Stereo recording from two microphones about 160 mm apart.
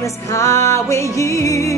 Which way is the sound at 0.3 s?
20° left (ahead or behind).